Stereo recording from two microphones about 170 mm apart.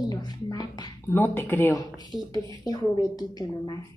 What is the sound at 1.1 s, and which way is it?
A child's voice, 15° left (ahead or behind).